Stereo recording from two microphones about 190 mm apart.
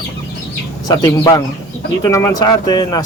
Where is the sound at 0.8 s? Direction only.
20° left (ahead or behind).